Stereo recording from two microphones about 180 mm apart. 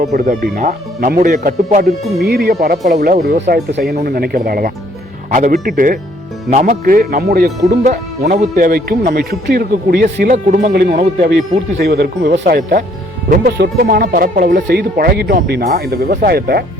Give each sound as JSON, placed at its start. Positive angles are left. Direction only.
{"t": 0.1, "sound": "speech", "side_deg": -60}
{"t": 2.2, "sound": "speech", "side_deg": -60}
{"t": 3.4, "sound": "speech", "side_deg": -75}
{"t": 8.3, "sound": "speech", "side_deg": -45}